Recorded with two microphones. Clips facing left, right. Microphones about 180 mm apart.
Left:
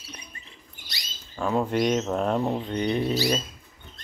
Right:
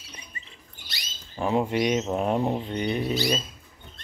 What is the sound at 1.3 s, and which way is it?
Speech, 20° right (ahead or behind).